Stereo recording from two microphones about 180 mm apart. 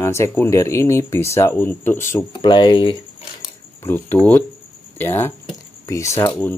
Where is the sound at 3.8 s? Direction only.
15° left (ahead or behind).